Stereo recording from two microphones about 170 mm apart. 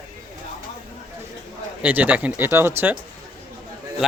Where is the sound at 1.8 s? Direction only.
10° right (ahead or behind).